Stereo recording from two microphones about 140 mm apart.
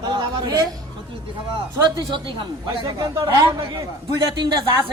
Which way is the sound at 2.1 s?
35° right (ahead or behind).